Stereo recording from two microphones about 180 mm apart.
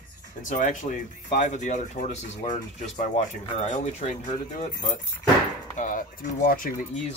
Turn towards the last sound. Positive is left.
turn(degrees=50)  # may be behind; listen again after turning